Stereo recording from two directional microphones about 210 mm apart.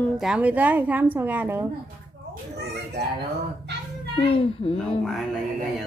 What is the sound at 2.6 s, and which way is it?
Speech, 55° right (ahead or behind).